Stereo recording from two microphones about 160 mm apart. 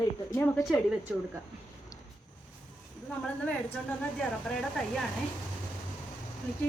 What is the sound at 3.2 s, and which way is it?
A woman's voice, 5° left (ahead or behind).